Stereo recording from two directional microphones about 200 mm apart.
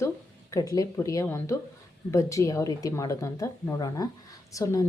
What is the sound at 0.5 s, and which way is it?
Speech, 15° left (ahead or behind).